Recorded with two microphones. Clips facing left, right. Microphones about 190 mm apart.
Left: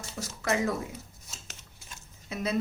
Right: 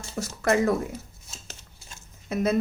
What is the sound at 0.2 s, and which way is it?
Speech, 55° right (ahead or behind).